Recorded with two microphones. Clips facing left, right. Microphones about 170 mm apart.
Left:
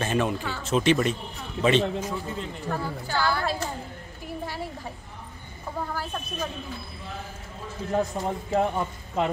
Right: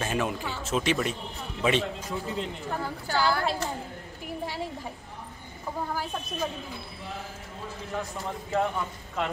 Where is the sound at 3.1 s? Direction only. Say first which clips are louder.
Even; 15° right (ahead or behind).